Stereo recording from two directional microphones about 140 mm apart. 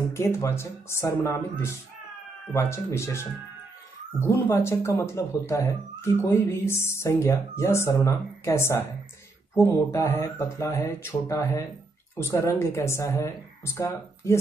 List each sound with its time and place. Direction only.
0.1 s speech: 20° left (ahead or behind)
4.5 s speech: 20° left (ahead or behind)